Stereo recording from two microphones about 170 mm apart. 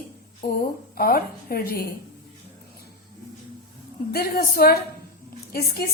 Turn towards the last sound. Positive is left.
turn(degrees=65)  # may be behind; listen again after turning